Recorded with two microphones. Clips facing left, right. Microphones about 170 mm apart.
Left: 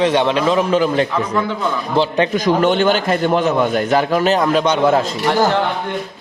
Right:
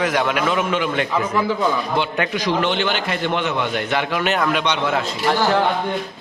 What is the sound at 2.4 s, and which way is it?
A man's voice, 45° left (ahead or behind).